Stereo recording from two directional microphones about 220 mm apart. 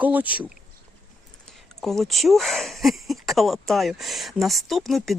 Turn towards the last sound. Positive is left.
turn(degrees=0)  # may be behind; listen again after turning